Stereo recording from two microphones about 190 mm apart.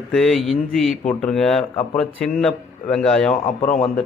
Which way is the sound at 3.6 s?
40° left (ahead or behind).